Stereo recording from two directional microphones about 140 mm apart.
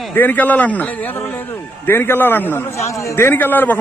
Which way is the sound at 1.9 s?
15° left (ahead or behind).